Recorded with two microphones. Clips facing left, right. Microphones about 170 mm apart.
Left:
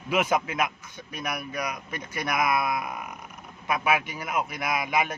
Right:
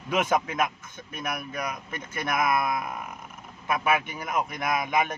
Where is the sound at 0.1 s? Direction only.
10° left (ahead or behind).